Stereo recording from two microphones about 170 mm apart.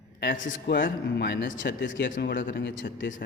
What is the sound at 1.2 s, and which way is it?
Speech, 90° left.